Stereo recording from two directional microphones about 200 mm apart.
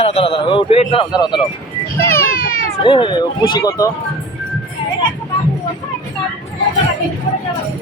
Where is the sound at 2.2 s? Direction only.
45° left (ahead or behind).